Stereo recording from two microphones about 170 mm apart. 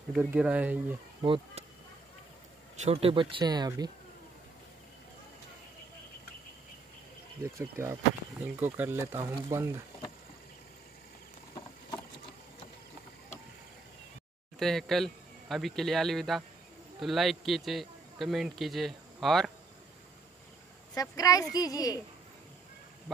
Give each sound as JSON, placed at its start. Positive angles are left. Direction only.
{"t": 0.1, "sound": "speech", "side_deg": -10}
{"t": 1.2, "sound": "speech", "side_deg": -30}
{"t": 2.7, "sound": "speech", "side_deg": -40}
{"t": 7.5, "sound": "speech", "side_deg": -15}
{"t": 9.2, "sound": "speech", "side_deg": -25}
{"t": 14.6, "sound": "a man's voice", "side_deg": 0}
{"t": 20.9, "sound": "a woman's voice", "side_deg": 20}